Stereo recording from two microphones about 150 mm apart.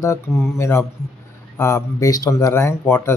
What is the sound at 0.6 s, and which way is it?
Speech, 20° left (ahead or behind).